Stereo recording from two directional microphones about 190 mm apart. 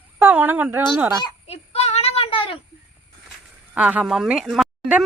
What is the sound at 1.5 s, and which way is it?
Child singing, 35° left (ahead or behind).